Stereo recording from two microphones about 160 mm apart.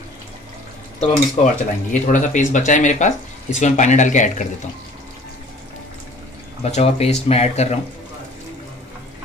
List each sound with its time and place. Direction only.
1.0 s speech: 40° left (ahead or behind)
1.9 s speech: 50° left (ahead or behind)
6.6 s speech: 40° left (ahead or behind)